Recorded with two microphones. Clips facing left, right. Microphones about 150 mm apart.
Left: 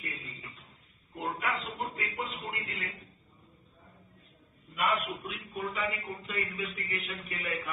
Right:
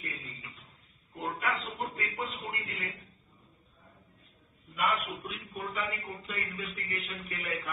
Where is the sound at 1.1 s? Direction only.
Centre (ahead or behind).